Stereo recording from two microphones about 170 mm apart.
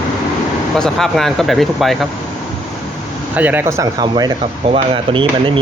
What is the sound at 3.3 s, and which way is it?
Speech, 10° right (ahead or behind).